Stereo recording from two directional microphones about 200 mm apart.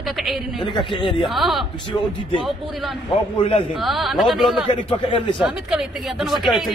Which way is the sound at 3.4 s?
25° left (ahead or behind).